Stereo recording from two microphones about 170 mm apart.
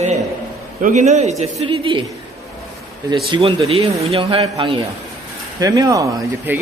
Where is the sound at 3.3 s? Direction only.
30° right (ahead or behind).